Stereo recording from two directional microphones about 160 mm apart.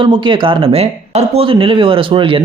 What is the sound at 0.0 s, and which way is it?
Speech, 30° right (ahead or behind).